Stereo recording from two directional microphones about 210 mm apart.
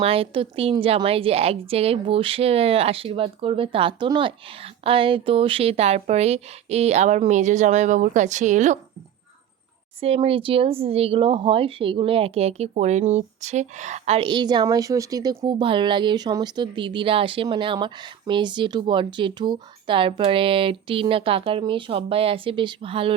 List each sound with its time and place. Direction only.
0.0 s speech: 25° right (ahead or behind)
10.0 s speech: 25° right (ahead or behind)